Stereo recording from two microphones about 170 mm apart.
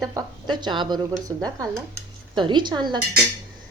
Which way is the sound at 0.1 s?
20° right (ahead or behind).